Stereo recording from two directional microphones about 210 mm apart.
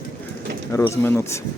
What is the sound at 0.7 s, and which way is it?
Speech, 15° left (ahead or behind).